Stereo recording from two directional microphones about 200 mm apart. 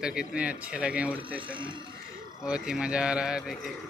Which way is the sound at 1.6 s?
25° right (ahead or behind).